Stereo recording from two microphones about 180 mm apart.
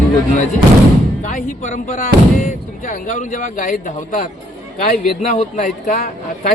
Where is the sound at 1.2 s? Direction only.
45° left (ahead or behind).